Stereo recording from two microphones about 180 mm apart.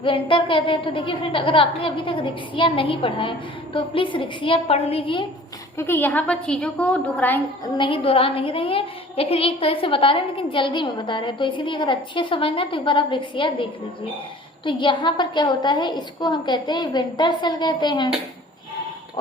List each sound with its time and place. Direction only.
0.0 s a woman's voice: 30° left (ahead or behind)
5.7 s a woman's voice: 15° left (ahead or behind)
7.8 s a woman's voice: 30° left (ahead or behind)